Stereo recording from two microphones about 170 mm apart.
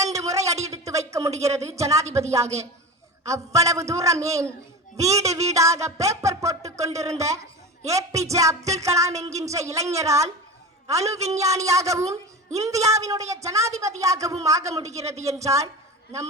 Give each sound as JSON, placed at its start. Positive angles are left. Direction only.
{"t": 0.1, "sound": "a sound", "side_deg": -20}
{"t": 1.4, "sound": "a man's voice", "side_deg": -20}
{"t": 3.2, "sound": "a man's voice", "side_deg": -20}
{"t": 4.9, "sound": "music", "side_deg": -20}
{"t": 9.4, "sound": "a man's voice", "side_deg": -20}
{"t": 10.8, "sound": "music", "side_deg": -20}
{"t": 15.2, "sound": "a man's voice", "side_deg": -20}